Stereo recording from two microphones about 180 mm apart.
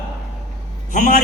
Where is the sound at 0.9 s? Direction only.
50° left (ahead or behind).